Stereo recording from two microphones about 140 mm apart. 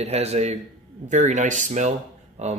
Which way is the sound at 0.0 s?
50° right (ahead or behind).